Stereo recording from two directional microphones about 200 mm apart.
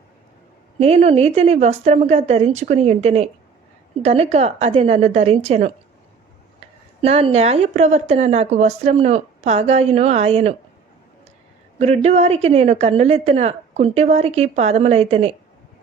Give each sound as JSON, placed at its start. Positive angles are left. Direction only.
{"t": 0.8, "sound": "speech", "side_deg": -30}
{"t": 7.0, "sound": "speech", "side_deg": -30}
{"t": 11.8, "sound": "speech", "side_deg": -35}